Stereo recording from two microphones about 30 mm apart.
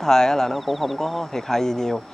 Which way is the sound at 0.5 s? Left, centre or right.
Centre.